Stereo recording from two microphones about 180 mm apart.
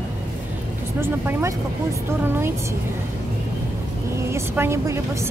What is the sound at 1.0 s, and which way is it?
Speech, 15° right (ahead or behind).